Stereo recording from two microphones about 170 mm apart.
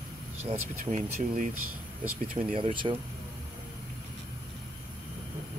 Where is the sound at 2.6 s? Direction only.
30° right (ahead or behind).